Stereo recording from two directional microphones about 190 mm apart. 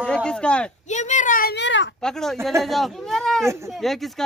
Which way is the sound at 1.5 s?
70° left (ahead or behind).